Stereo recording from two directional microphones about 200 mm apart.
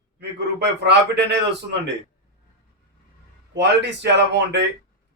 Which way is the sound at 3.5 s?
60° right (ahead or behind).